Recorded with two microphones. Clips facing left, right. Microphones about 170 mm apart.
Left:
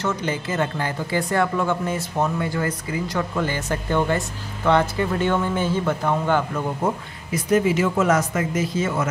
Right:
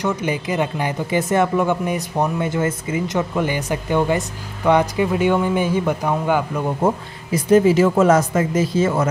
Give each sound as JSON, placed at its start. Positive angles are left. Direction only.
{"t": 0.0, "sound": "speech", "side_deg": -15}
{"t": 7.5, "sound": "speech", "side_deg": -35}